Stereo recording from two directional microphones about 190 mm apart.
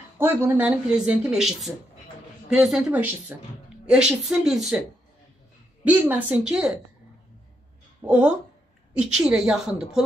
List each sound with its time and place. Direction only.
0.2 s a woman's voice: 10° right (ahead or behind)
5.9 s speech: 10° right (ahead or behind)
8.0 s a woman's voice: 15° right (ahead or behind)